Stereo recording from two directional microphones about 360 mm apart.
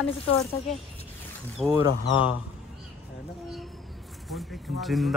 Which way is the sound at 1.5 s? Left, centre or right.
Centre.